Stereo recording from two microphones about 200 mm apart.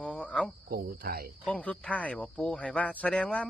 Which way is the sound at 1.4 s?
5° left (ahead or behind).